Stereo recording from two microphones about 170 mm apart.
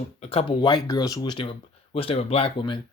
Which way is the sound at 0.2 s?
35° left (ahead or behind).